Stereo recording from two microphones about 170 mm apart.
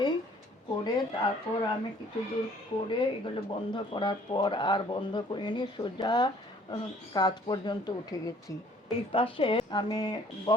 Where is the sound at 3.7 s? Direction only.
30° left (ahead or behind).